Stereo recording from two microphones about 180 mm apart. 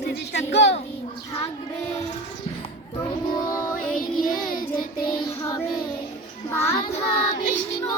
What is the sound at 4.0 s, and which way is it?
Child singing, 50° left (ahead or behind).